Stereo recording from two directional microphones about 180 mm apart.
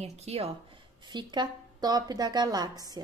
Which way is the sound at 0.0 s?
35° right (ahead or behind).